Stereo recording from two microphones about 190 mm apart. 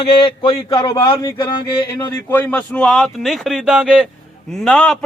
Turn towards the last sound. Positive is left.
turn(degrees=0)  # may be behind; listen again after turning